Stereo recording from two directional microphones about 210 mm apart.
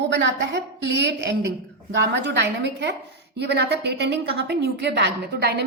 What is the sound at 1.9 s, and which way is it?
A woman's voice, 55° right (ahead or behind).